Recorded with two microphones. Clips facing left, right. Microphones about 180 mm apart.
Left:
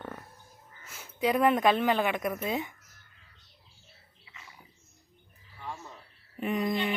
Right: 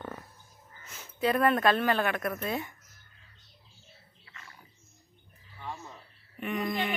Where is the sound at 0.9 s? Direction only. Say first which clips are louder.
Left 1 dB; 15° left (ahead or behind).